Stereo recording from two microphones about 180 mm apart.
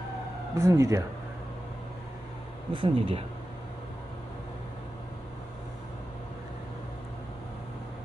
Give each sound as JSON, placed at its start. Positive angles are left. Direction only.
{"t": 0.6, "sound": "speech", "side_deg": -15}
{"t": 2.7, "sound": "speech", "side_deg": -30}